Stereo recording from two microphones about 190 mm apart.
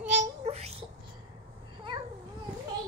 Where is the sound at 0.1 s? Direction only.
35° right (ahead or behind).